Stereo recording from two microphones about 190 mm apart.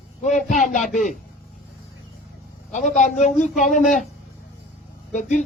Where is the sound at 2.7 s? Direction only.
40° left (ahead or behind).